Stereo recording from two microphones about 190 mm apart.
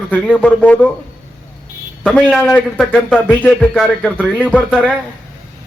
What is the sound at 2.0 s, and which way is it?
A man's voice, 5° left (ahead or behind).